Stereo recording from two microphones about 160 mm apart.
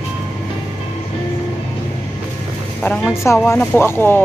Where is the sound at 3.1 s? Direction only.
15° left (ahead or behind).